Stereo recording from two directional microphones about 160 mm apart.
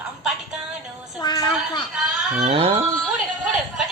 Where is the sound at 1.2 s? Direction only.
25° left (ahead or behind).